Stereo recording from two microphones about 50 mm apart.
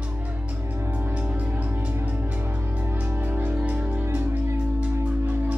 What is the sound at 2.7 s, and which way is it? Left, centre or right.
Music, right.